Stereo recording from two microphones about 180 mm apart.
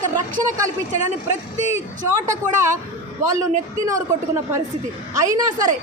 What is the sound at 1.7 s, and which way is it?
Speech, 15° right (ahead or behind).